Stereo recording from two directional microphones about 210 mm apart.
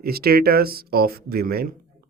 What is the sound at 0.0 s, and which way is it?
Speech, 45° right (ahead or behind).